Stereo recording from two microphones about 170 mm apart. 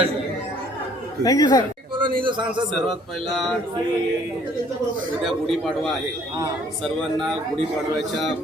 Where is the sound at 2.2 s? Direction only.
25° right (ahead or behind).